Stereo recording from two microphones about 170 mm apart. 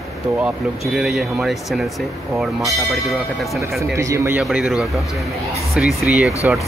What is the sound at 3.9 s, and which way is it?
Speech, 15° right (ahead or behind).